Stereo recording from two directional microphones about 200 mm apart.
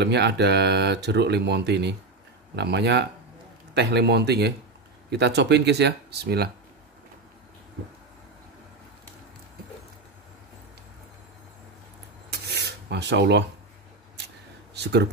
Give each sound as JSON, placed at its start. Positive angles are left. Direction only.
{"t": 0.0, "sound": "speech", "side_deg": -60}
{"t": 12.4, "sound": "filing", "side_deg": -55}
{"t": 14.2, "sound": "a sound", "side_deg": -55}